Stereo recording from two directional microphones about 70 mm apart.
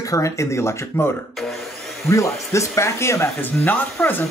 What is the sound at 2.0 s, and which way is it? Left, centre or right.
Speech, left.